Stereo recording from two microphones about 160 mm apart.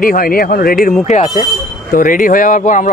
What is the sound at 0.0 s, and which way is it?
Speech, 60° left (ahead or behind).